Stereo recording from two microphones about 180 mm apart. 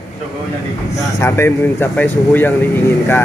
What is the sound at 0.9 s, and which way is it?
Speech, 15° left (ahead or behind).